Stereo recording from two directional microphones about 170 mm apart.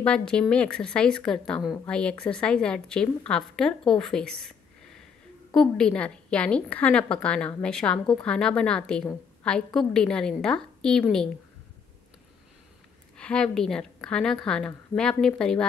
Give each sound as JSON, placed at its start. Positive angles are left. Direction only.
{"t": 0.0, "sound": "a woman's voice", "side_deg": 5}
{"t": 13.2, "sound": "a woman's voice", "side_deg": 5}